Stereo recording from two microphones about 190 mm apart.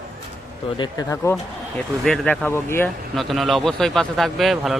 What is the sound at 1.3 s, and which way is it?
Speech, centre (ahead or behind).